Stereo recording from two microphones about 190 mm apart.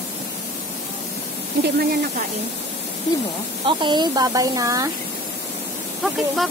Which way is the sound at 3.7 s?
25° right (ahead or behind).